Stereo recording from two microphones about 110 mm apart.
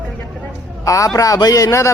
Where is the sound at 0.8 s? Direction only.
30° left (ahead or behind).